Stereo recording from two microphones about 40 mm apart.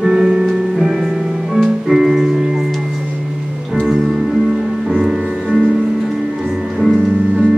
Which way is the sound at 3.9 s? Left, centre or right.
Centre.